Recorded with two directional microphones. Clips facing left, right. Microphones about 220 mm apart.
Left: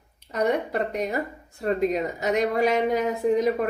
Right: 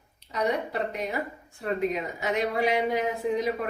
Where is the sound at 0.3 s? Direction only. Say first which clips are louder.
Left 4 dB; 50° left (ahead or behind).